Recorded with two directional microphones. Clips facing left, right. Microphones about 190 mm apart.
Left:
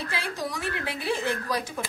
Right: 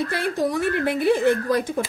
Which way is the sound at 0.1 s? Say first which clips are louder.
Right 9 dB; 50° right (ahead or behind).